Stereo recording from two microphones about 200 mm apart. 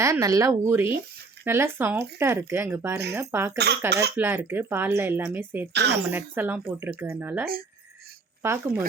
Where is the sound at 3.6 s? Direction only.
55° right (ahead or behind).